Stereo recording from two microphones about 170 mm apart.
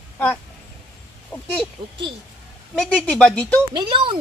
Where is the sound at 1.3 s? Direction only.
10° left (ahead or behind).